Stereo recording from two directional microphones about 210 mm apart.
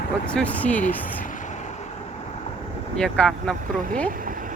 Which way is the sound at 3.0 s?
5° left (ahead or behind).